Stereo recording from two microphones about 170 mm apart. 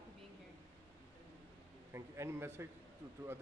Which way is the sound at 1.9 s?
15° right (ahead or behind).